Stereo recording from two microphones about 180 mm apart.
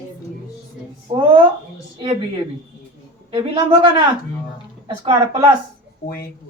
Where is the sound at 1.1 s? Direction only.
25° right (ahead or behind).